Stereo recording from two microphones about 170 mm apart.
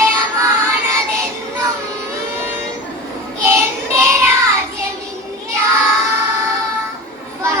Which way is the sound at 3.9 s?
15° right (ahead or behind).